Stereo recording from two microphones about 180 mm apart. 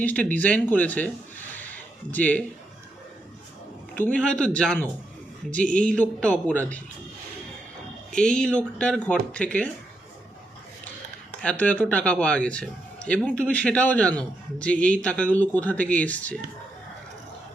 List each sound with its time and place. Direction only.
0.0 s a man's voice: 10° left (ahead or behind)
1.5 s a sound: 10° left (ahead or behind)
3.9 s a man's voice: 10° left (ahead or behind)
8.1 s speech: 5° left (ahead or behind)
11.4 s a man's voice: 10° left (ahead or behind)